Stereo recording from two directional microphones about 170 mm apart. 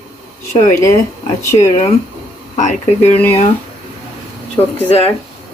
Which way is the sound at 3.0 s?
10° left (ahead or behind).